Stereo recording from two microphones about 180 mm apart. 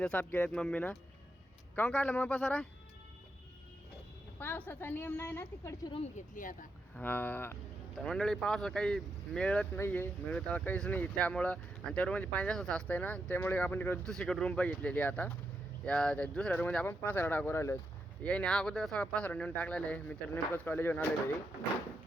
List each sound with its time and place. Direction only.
0.0 s speech: 10° left (ahead or behind)
4.4 s speech: 10° left (ahead or behind)
5.9 s speech: 40° left (ahead or behind)
6.9 s speech: 10° left (ahead or behind)